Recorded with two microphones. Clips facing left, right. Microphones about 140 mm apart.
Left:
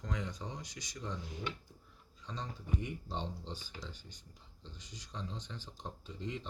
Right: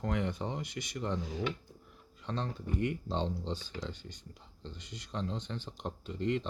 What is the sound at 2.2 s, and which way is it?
Speech, 65° right (ahead or behind).